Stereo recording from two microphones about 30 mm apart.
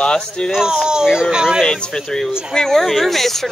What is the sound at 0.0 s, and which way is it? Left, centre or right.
Speech, left.